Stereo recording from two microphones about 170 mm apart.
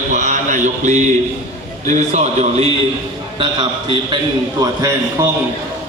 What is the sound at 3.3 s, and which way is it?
Speech, 30° right (ahead or behind).